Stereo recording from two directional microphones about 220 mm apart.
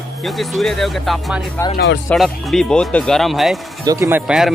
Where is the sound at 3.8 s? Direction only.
15° right (ahead or behind).